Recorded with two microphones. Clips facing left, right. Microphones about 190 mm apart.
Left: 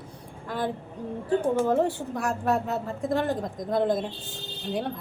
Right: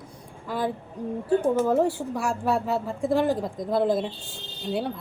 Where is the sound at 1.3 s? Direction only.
10° right (ahead or behind).